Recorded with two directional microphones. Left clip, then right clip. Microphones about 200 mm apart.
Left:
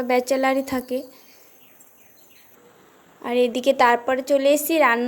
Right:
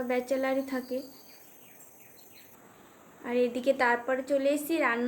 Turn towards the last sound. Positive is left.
turn(degrees=35)  # may be behind; listen again after turning